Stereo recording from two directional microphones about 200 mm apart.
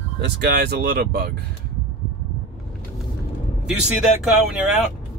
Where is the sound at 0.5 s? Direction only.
55° right (ahead or behind).